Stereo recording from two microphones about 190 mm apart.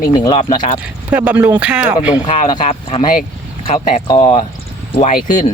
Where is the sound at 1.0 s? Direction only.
10° right (ahead or behind).